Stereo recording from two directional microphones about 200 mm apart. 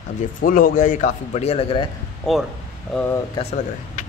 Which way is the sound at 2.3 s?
Centre (ahead or behind).